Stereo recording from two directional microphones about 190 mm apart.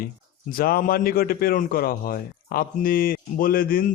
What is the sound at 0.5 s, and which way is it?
A man's voice, 50° left (ahead or behind).